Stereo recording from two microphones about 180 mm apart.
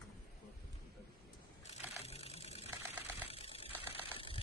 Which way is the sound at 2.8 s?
10° right (ahead or behind).